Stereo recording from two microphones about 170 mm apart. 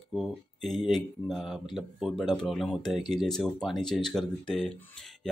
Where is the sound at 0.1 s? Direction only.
Centre (ahead or behind).